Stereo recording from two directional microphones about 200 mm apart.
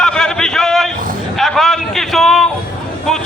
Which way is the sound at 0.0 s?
5° left (ahead or behind).